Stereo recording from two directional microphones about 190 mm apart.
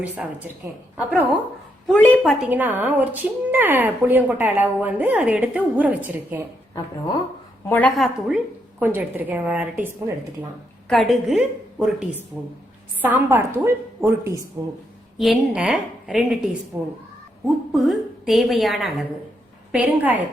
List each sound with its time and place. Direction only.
0.0 s a woman's voice: 10° right (ahead or behind)
1.9 s a woman's voice: 5° left (ahead or behind); by 6.4 s 10° right (ahead or behind)
7.7 s a woman's voice: 5° left (ahead or behind); by 14.7 s 15° right (ahead or behind)
15.2 s a woman's voice: 5° right (ahead or behind)
17.7 s a woman's voice: centre (ahead or behind)